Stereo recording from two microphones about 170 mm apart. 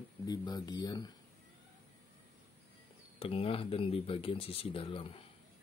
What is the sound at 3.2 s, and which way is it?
Speech, 35° left (ahead or behind).